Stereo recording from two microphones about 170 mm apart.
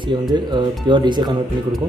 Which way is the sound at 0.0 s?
25° right (ahead or behind).